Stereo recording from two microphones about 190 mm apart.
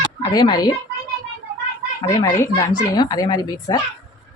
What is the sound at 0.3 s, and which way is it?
Speech, 20° left (ahead or behind).